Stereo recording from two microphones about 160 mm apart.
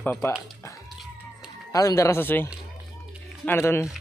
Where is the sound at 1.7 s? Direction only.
20° left (ahead or behind).